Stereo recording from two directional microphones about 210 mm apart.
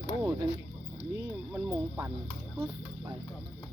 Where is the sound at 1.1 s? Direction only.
10° right (ahead or behind).